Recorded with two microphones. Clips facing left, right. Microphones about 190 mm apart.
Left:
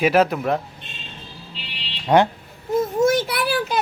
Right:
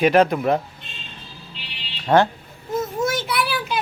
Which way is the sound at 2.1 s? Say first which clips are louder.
Even; 15° left (ahead or behind).